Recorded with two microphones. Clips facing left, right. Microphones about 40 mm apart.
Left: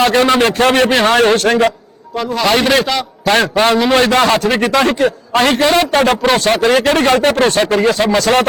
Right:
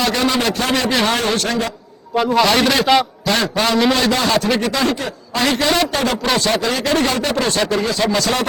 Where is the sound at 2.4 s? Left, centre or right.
Centre.